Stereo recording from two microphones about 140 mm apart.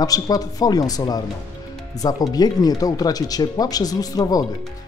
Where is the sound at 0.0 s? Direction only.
25° left (ahead or behind).